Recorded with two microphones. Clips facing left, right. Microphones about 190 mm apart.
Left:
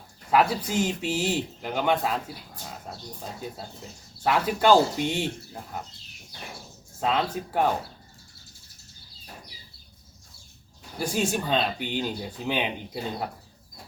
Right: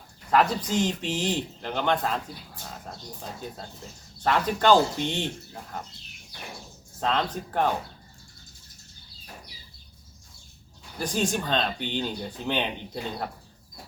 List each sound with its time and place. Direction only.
0.3 s speech: 10° left (ahead or behind)
4.2 s speech: 10° left (ahead or behind)
7.0 s speech: 10° left (ahead or behind)
10.9 s speech: 10° left (ahead or behind)